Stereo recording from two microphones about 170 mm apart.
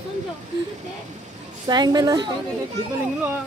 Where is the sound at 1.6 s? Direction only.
25° right (ahead or behind).